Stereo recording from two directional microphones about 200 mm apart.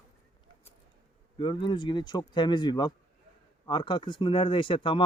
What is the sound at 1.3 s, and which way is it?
Speech, 25° left (ahead or behind).